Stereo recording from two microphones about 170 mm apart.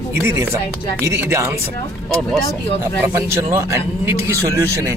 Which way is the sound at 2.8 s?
15° right (ahead or behind).